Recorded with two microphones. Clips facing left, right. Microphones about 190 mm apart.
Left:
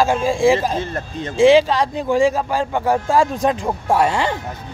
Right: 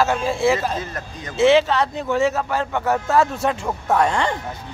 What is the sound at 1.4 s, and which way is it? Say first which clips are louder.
Speech: left 3 dB; 15° left (ahead or behind).